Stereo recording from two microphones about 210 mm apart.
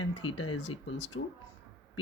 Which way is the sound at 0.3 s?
90° left.